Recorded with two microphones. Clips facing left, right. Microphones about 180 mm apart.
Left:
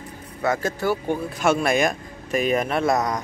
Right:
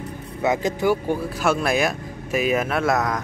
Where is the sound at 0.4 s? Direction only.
20° right (ahead or behind).